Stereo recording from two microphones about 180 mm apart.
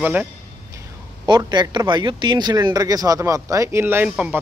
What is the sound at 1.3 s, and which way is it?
Speech, 25° right (ahead or behind).